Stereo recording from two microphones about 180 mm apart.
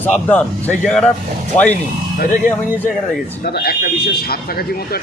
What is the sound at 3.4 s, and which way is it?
Speech, 60° left (ahead or behind).